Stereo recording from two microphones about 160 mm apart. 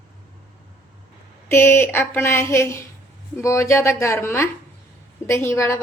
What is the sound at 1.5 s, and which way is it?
A woman's voice, 15° left (ahead or behind).